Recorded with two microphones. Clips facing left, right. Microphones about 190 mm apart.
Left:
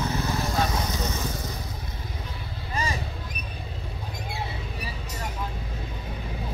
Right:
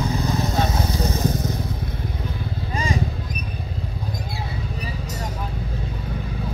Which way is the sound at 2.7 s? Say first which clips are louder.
Right 4 dB; 15° right (ahead or behind).